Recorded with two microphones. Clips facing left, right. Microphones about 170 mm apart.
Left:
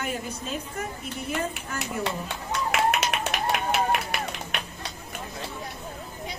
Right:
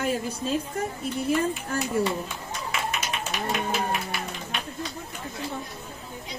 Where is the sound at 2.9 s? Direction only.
70° left (ahead or behind).